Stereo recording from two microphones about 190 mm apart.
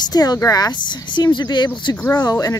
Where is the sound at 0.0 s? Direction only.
20° left (ahead or behind).